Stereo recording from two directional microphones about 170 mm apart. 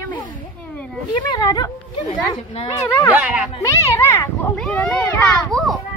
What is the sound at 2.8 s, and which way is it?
A child's voice, 15° left (ahead or behind).